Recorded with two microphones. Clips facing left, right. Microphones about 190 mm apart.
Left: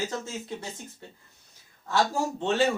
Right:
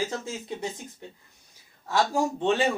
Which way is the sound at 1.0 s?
20° right (ahead or behind).